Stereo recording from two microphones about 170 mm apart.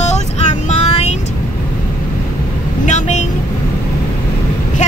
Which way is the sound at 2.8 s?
45° left (ahead or behind).